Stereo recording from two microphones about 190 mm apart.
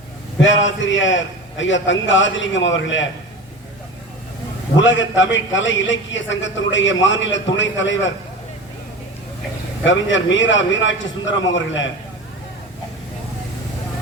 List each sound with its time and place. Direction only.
0.3 s a man's voice: 85° left
4.8 s a man's voice: 80° left
9.8 s a man's voice: 75° left (ahead or behind)